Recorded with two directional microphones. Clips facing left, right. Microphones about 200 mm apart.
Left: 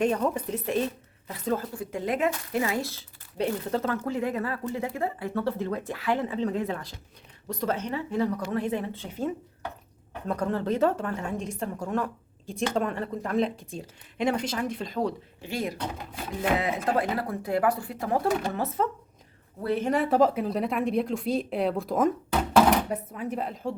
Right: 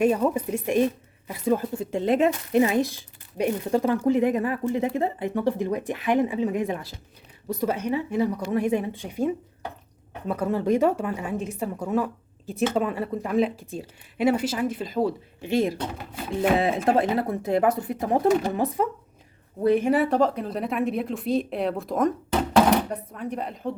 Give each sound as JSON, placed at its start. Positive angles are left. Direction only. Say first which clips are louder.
{"t": 0.0, "sound": "a woman's voice", "louder": "right 4 dB", "side_deg": -10}
{"t": 1.7, "sound": "a woman's voice", "louder": "right 6 dB", "side_deg": -25}
{"t": 15.4, "sound": "a woman's voice", "louder": "right 9 dB", "side_deg": -20}
{"t": 19.9, "sound": "a woman's voice", "louder": "right 1 dB", "side_deg": 0}